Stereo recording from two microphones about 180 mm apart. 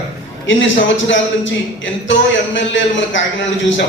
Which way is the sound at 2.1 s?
90° left.